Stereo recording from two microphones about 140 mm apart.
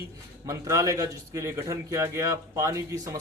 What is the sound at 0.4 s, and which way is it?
A man's voice, 20° right (ahead or behind).